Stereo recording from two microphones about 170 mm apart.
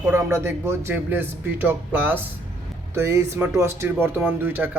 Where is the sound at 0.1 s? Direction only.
15° right (ahead or behind).